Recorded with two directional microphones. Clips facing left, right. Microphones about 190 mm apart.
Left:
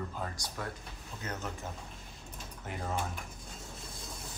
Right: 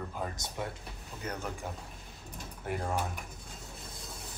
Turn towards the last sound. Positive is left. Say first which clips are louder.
# right 3 dB
turn(degrees=-10)  # may be behind; listen again after turning